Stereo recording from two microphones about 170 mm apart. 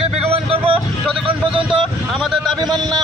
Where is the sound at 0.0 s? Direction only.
35° right (ahead or behind).